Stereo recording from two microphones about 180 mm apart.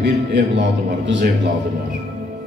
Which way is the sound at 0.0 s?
75° right (ahead or behind).